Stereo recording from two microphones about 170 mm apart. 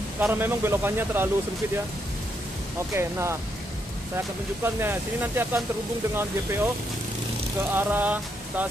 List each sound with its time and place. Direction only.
0.2 s speech: 10° right (ahead or behind)
2.9 s speech: 15° right (ahead or behind)
4.6 s speech: 10° right (ahead or behind)
7.7 s speech: 10° right (ahead or behind)